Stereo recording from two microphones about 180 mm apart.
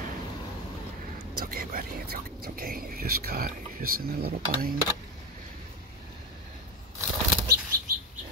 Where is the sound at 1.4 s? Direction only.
55° right (ahead or behind).